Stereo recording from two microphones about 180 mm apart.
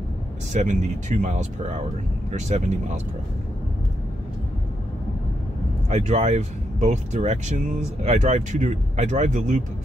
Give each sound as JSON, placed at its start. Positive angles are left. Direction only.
{"t": 0.5, "sound": "speech", "side_deg": -40}
{"t": 5.9, "sound": "speech", "side_deg": -40}